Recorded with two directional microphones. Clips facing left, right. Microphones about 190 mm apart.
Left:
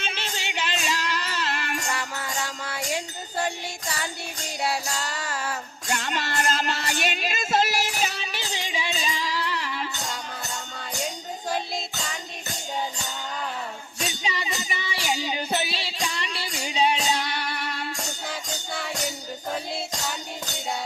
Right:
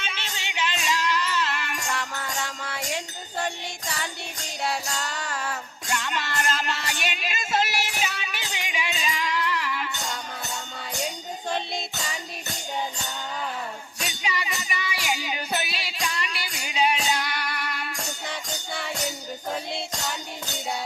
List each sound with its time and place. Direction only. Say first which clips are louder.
0.0 s music: left 3 dB; 35° left (ahead or behind)
1.9 s music: even; 5° left (ahead or behind)
4.6 s music: left 1 dB; 5° left (ahead or behind)
5.9 s music: left 1 dB; 35° left (ahead or behind)
14.0 s music: left 1 dB; 30° left (ahead or behind)
18.3 s music: left 1 dB; centre (ahead or behind)